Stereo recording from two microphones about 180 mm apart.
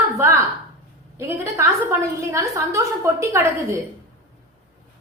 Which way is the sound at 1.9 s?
15° right (ahead or behind).